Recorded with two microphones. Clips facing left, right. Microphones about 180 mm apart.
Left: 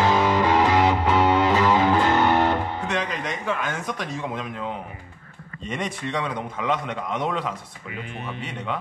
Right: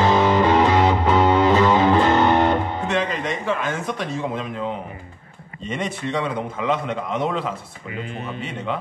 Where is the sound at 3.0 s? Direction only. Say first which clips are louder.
Right 4 dB; 30° right (ahead or behind).